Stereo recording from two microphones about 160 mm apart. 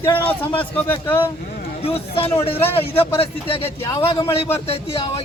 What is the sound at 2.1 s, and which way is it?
Speech, 35° left (ahead or behind).